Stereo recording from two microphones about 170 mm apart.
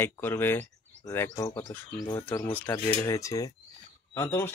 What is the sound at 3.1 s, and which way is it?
Cutlery, 20° left (ahead or behind).